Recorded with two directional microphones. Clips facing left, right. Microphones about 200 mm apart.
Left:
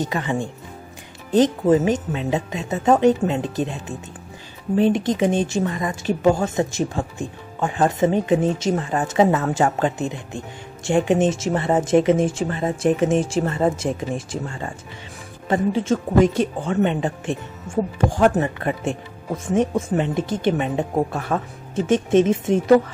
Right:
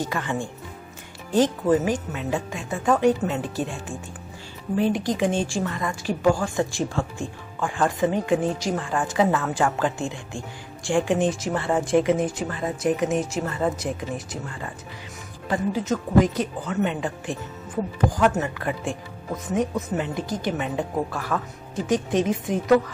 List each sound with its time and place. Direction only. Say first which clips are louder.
0.0 s speech: left 4 dB; 20° left (ahead or behind)